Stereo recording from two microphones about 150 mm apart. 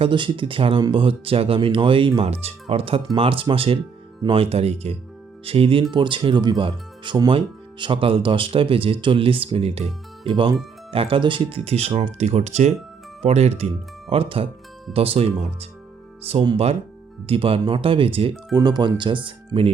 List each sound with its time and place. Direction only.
0.0 s speech: 35° right (ahead or behind)